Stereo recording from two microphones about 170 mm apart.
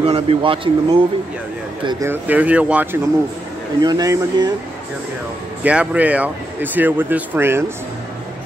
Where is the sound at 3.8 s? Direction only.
20° right (ahead or behind).